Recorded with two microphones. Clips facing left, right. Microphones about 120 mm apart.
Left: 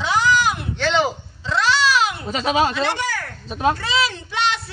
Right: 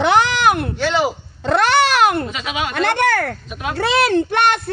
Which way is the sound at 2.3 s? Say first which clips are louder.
Left 5 dB; 35° left (ahead or behind).